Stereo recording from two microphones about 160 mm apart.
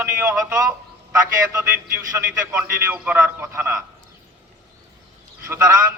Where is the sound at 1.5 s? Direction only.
20° right (ahead or behind).